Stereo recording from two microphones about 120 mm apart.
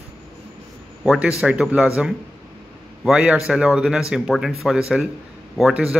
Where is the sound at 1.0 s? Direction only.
Centre (ahead or behind).